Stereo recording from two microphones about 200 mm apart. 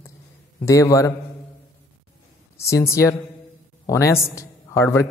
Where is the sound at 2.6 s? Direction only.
15° left (ahead or behind).